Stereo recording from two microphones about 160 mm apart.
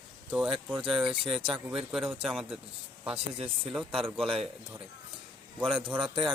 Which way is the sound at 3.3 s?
35° right (ahead or behind).